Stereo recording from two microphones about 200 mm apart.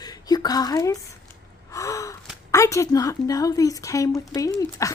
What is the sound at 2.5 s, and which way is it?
A woman's voice, 15° left (ahead or behind).